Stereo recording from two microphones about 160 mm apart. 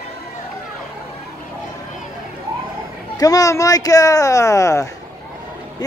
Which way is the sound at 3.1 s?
20° left (ahead or behind).